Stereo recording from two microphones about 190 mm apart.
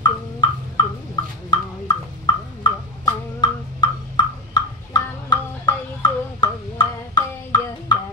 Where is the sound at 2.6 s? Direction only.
20° left (ahead or behind).